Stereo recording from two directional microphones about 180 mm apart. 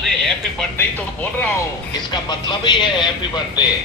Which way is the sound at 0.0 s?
5° left (ahead or behind).